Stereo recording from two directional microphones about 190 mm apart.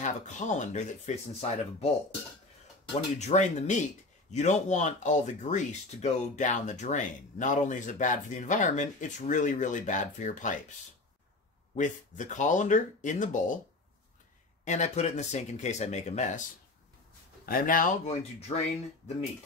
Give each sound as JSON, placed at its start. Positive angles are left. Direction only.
{"t": 0.0, "sound": "speech", "side_deg": 40}
{"t": 2.9, "sound": "speech", "side_deg": 35}
{"t": 11.7, "sound": "speech", "side_deg": 40}
{"t": 14.6, "sound": "speech", "side_deg": 40}
{"t": 17.5, "sound": "speech", "side_deg": 45}